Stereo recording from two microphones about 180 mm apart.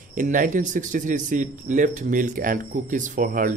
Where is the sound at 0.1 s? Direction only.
45° right (ahead or behind).